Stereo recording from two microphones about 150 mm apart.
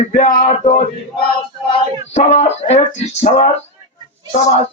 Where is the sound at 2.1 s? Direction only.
45° left (ahead or behind).